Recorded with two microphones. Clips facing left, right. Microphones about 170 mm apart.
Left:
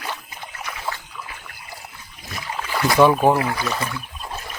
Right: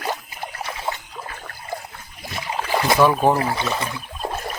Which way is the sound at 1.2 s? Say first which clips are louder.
Right 3 dB; 45° right (ahead or behind).